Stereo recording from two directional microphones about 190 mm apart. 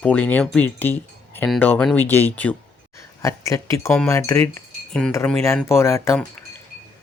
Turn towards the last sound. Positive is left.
turn(degrees=15)  # may be behind; listen again after turning